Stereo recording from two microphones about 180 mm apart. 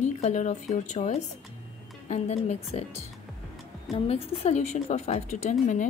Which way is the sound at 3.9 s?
35° left (ahead or behind).